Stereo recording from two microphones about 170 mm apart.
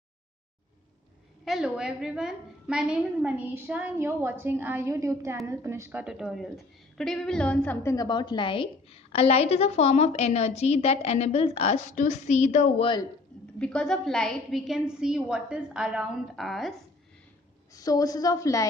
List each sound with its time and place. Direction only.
1.4 s a woman's voice: centre (ahead or behind)
7.9 s a woman's voice: 25° left (ahead or behind); by 12.8 s 45° left (ahead or behind)
13.6 s a woman's voice: 5° left (ahead or behind)
17.7 s a woman's voice: 20° left (ahead or behind)